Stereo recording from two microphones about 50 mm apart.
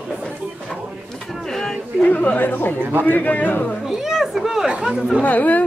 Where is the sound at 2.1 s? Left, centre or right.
Left.